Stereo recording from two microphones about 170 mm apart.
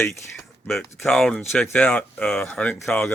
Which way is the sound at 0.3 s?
5° left (ahead or behind).